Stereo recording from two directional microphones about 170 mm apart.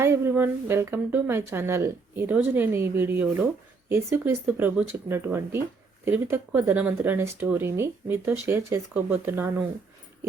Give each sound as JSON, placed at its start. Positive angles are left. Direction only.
{"t": 0.0, "sound": "speech", "side_deg": -15}